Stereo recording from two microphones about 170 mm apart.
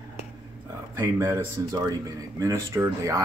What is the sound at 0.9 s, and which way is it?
Speech, 15° right (ahead or behind).